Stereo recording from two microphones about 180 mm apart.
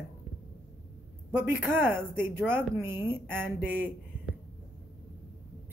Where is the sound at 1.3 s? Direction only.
10° right (ahead or behind).